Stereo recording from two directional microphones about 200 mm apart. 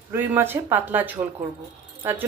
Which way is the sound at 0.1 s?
10° right (ahead or behind).